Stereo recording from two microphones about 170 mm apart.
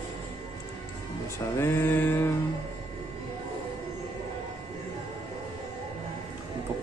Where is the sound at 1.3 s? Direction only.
15° left (ahead or behind).